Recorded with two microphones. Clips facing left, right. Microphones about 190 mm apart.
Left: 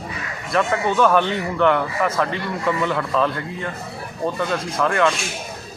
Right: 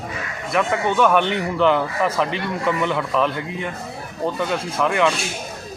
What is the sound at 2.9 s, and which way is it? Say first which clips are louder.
Speech: even; 10° right (ahead or behind).